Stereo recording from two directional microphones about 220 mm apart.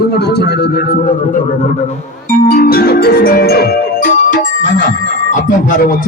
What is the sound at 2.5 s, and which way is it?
Music, 45° left (ahead or behind).